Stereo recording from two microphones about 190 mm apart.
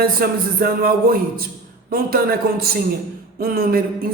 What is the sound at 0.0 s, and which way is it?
Speech, 50° right (ahead or behind).